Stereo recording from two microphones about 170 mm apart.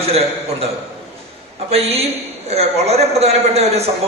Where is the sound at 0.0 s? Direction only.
35° right (ahead or behind).